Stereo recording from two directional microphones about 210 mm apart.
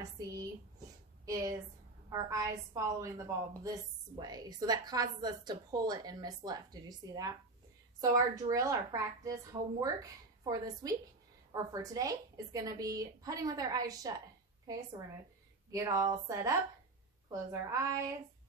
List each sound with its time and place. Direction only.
1.2 s a woman's voice: 15° right (ahead or behind)